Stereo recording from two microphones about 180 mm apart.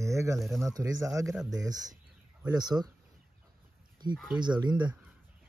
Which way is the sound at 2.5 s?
20° right (ahead or behind).